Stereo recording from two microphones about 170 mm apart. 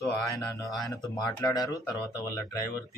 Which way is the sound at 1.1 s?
20° left (ahead or behind).